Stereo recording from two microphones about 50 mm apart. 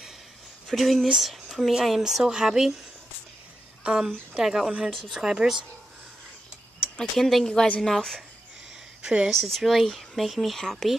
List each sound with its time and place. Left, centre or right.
0.7 s speech: centre
4.4 s speech: centre
7.0 s speech: centre
9.0 s speech: centre
9.3 s speech: centre